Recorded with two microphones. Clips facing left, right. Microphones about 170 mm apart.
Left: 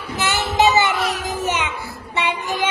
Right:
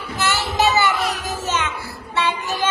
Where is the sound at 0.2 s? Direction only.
20° left (ahead or behind).